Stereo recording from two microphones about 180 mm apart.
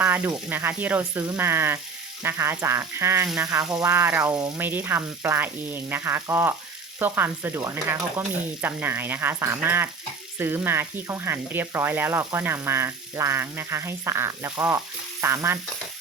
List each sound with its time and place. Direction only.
0.0 s sizzle: 10° right (ahead or behind)
0.3 s speech: 10° right (ahead or behind)
4.4 s speech: 20° right (ahead or behind)
4.6 s speech: 10° right (ahead or behind)